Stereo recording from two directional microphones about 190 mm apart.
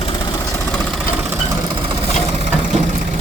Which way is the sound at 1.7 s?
30° right (ahead or behind).